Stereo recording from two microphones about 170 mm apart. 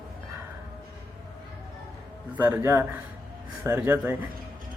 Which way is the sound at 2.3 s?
15° right (ahead or behind).